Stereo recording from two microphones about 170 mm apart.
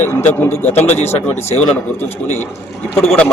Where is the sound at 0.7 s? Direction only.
40° left (ahead or behind).